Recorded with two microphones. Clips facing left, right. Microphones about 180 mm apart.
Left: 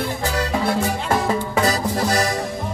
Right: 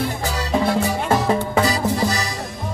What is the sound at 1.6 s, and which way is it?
Music, 55° left (ahead or behind).